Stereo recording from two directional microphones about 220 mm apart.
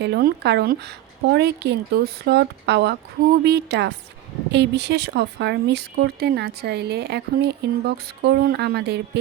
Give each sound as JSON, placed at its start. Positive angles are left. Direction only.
{"t": 0.0, "sound": "speech", "side_deg": -45}